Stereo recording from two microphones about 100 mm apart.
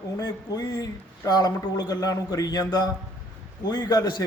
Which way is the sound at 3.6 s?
45° left (ahead or behind).